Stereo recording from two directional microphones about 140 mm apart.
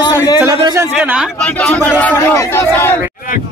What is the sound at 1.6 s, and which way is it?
Speech, 10° left (ahead or behind).